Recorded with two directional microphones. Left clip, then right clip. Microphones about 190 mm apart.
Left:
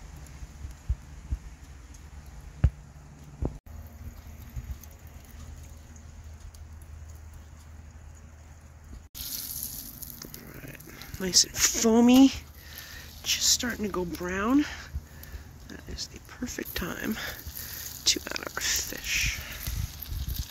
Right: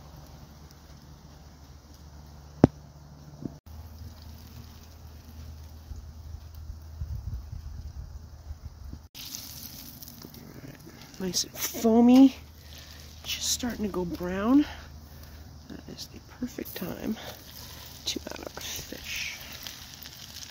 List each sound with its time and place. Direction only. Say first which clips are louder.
10.7 s speech: left 3 dB; centre (ahead or behind); by 14.9 s 20° right (ahead or behind)
15.7 s a sound: left 3 dB; 20° right (ahead or behind)
16.3 s speech: right 2 dB; 5° right (ahead or behind)
18.0 s whispering: left 7 dB; centre (ahead or behind)